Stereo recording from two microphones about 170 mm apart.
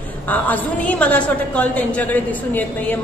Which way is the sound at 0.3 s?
10° left (ahead or behind).